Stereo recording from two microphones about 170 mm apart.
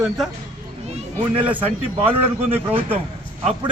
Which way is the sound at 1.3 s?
10° right (ahead or behind).